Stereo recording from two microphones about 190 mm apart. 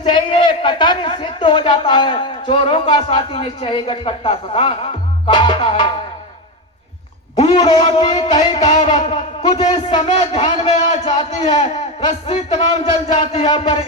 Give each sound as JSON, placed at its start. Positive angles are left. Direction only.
{"t": 0.0, "sound": "a man's voice", "side_deg": 25}
{"t": 7.3, "sound": "a man's voice", "side_deg": 25}